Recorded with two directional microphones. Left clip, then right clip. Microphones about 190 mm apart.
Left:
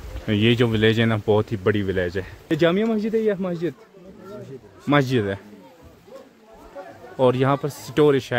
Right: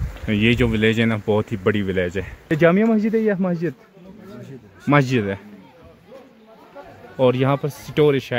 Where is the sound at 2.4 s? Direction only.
15° right (ahead or behind).